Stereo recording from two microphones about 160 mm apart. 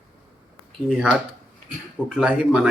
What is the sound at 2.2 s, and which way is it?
Speech, 5° right (ahead or behind).